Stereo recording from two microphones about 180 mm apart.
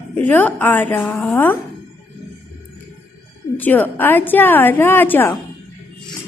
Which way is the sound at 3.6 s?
10° left (ahead or behind).